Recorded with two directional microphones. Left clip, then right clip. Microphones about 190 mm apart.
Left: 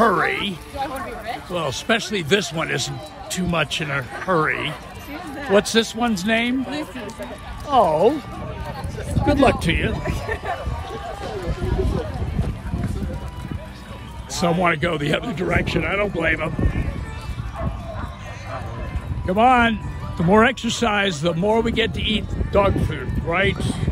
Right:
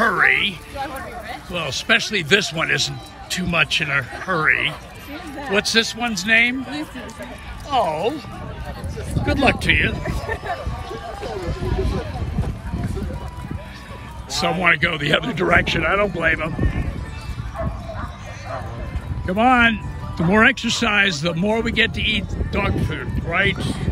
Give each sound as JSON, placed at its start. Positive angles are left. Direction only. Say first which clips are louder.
{"t": 0.0, "sound": "a sound", "louder": "right 2 dB", "side_deg": 15}
{"t": 0.7, "sound": "a sound", "louder": "left 1 dB", "side_deg": 50}
{"t": 1.5, "sound": "speech", "louder": "right 3 dB", "side_deg": 15}
{"t": 7.7, "sound": "speech", "louder": "left 4 dB", "side_deg": 20}
{"t": 9.2, "sound": "speech", "louder": "left 1 dB", "side_deg": 10}
{"t": 14.4, "sound": "speech", "louder": "right 2 dB", "side_deg": 10}
{"t": 19.2, "sound": "speech", "louder": "even", "side_deg": 10}